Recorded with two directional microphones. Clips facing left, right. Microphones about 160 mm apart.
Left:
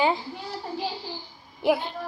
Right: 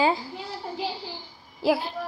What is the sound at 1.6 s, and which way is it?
Speech, 20° left (ahead or behind).